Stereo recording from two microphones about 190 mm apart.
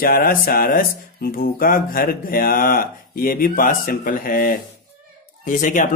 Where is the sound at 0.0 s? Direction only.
50° left (ahead or behind).